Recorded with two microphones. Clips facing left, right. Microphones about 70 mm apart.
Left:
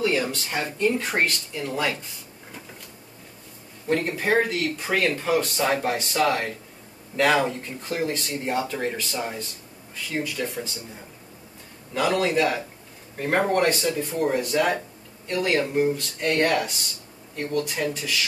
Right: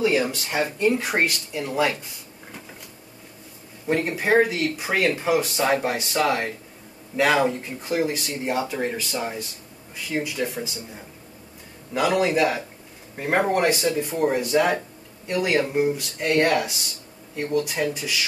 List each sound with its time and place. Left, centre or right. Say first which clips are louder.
0.0 s speech: right 2 dB; centre
3.8 s speech: right 1 dB; centre
11.9 s speech: right 2 dB; centre